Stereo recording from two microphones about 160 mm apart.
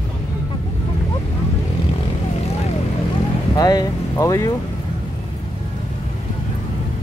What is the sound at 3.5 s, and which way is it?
Speech, 25° left (ahead or behind).